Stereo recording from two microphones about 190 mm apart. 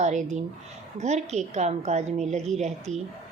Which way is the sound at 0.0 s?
40° right (ahead or behind).